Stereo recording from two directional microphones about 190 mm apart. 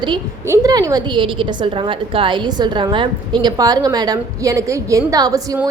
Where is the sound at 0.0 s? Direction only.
20° right (ahead or behind).